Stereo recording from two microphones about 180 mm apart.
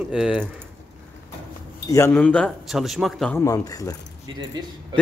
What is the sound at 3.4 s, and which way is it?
Speech, 20° left (ahead or behind).